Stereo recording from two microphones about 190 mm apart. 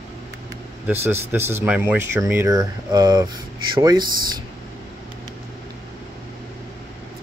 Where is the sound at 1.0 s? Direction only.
10° right (ahead or behind).